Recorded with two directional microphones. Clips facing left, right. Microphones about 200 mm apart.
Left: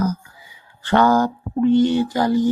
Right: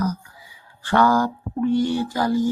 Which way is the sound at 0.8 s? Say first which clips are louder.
Left 2 dB; 20° left (ahead or behind).